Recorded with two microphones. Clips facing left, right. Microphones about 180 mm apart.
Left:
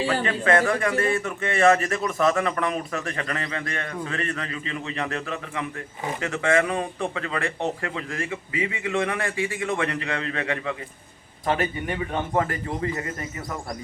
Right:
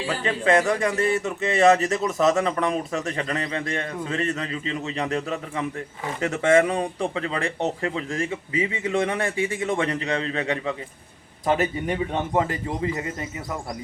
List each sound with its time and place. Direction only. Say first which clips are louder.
0.3 s a man's voice: right 4 dB; 25° right (ahead or behind)